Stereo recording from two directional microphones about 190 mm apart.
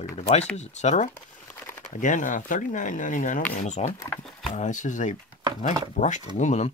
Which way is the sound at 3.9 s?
15° left (ahead or behind).